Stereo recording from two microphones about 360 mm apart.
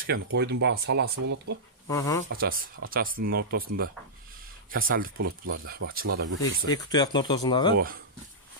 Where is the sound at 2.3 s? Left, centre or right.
Right.